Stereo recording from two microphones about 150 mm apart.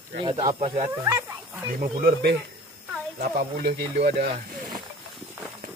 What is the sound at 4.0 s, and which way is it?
Speech, 90° right.